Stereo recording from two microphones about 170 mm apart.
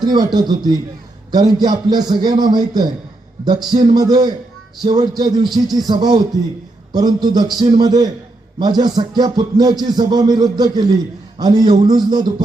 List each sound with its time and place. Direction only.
0.0 s a man's voice: 25° right (ahead or behind)